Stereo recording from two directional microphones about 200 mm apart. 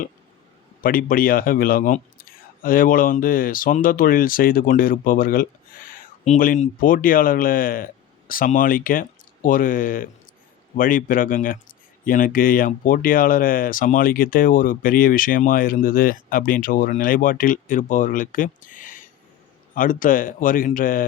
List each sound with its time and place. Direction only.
0.8 s speech: 45° left (ahead or behind)